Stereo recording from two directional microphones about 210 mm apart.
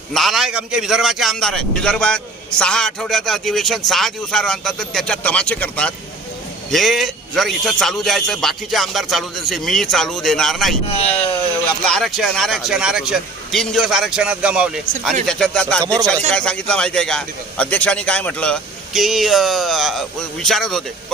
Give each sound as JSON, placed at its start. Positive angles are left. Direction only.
{"t": 0.1, "sound": "a man's voice", "side_deg": 0}
{"t": 15.8, "sound": "speech", "side_deg": -15}
{"t": 16.3, "sound": "a man's voice", "side_deg": 5}